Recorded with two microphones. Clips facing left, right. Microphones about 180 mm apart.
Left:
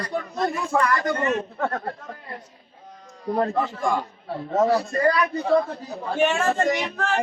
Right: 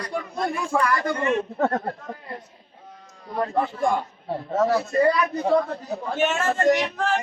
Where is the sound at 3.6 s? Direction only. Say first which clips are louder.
Right 1 dB; 55° right (ahead or behind).